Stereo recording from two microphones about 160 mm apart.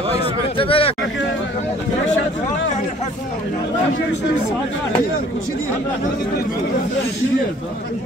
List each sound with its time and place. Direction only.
0.6 s speech: 35° left (ahead or behind)